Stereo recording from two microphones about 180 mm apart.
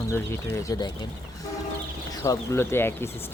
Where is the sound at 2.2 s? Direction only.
15° left (ahead or behind).